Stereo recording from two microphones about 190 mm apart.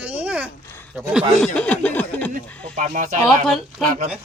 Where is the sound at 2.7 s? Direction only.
40° right (ahead or behind).